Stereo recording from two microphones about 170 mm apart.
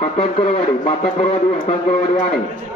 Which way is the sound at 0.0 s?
40° left (ahead or behind).